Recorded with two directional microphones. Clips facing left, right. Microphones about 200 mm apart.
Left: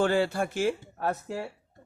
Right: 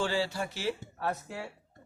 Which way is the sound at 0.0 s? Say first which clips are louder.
Left 6 dB; 55° left (ahead or behind).